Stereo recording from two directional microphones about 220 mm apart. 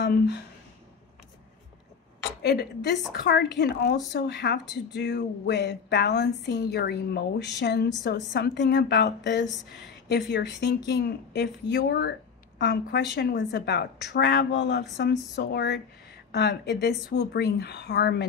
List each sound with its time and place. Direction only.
2.4 s speech: 45° left (ahead or behind)